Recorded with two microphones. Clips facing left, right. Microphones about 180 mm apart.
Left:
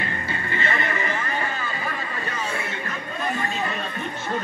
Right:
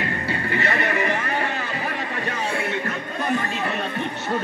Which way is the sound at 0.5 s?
70° right (ahead or behind).